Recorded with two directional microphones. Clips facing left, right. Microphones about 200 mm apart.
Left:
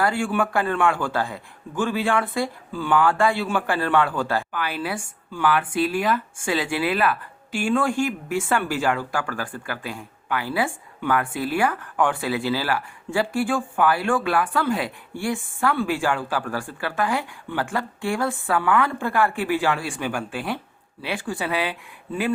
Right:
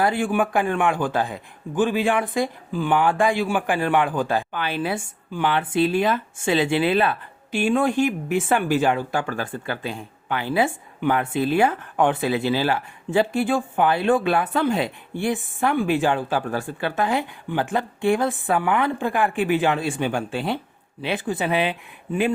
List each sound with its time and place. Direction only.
0.0 s speech: 20° right (ahead or behind)